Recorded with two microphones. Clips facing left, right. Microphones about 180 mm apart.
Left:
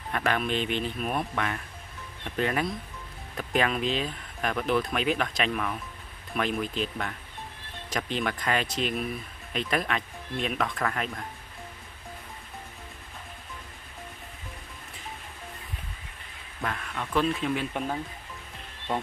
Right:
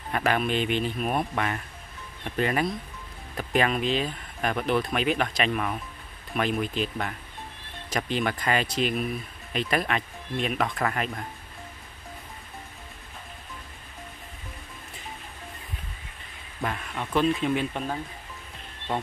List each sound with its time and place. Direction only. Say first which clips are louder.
0.1 s speech: right 2 dB; 5° right (ahead or behind)
16.6 s speech: right 2 dB; 15° right (ahead or behind)
17.1 s speech: right 3 dB; centre (ahead or behind)